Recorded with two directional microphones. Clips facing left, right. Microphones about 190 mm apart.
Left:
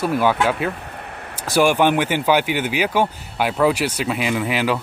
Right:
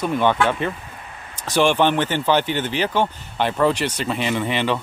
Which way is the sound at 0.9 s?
60° left (ahead or behind).